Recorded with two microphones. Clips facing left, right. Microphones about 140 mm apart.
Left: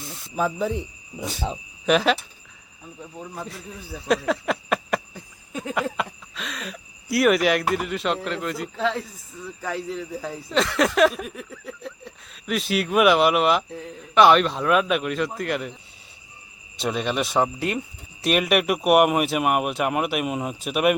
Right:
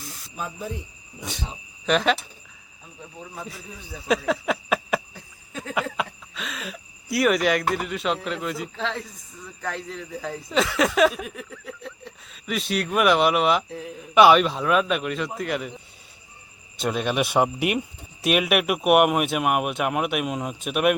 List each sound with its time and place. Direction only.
0.3 s speech: 85° left
1.9 s speech: 5° left (ahead or behind)
3.3 s speech: centre (ahead or behind)
16.8 s speech: centre (ahead or behind)
18.2 s speech: 5° right (ahead or behind)